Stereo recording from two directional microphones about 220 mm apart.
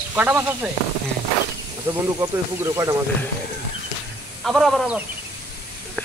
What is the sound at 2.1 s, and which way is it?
Speech, 15° right (ahead or behind).